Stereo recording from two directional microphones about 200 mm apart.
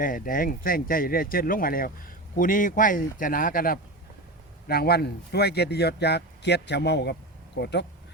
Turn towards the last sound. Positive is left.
turn(degrees=60)  # may be behind; listen again after turning